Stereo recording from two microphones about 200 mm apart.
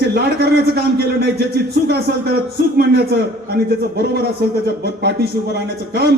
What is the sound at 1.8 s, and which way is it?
A man's voice, 55° right (ahead or behind).